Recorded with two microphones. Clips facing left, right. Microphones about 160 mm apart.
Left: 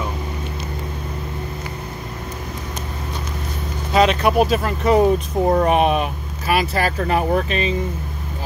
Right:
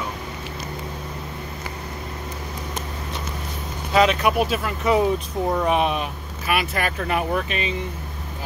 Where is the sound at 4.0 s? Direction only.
35° left (ahead or behind); by 6.1 s 50° left (ahead or behind).